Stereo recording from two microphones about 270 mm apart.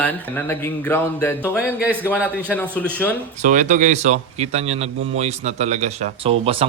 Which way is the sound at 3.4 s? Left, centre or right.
Right.